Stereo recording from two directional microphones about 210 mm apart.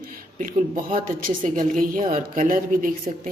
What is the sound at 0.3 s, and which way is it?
A woman's voice, 40° right (ahead or behind).